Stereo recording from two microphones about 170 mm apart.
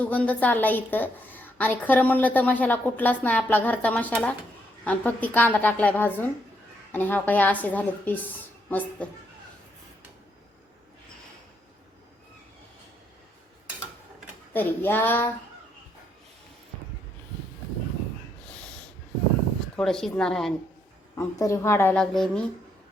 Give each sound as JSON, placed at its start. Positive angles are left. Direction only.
{"t": 0.0, "sound": "a woman's voice", "side_deg": 10}
{"t": 14.5, "sound": "a woman's voice", "side_deg": 10}
{"t": 19.7, "sound": "speech", "side_deg": 5}
{"t": 21.2, "sound": "a woman's voice", "side_deg": 20}
{"t": 21.9, "sound": "speech", "side_deg": 5}